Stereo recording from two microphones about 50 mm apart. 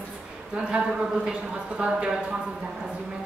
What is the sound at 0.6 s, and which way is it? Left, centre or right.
A woman's voice, centre.